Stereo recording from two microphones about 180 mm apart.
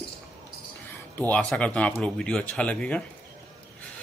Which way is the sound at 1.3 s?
5° left (ahead or behind).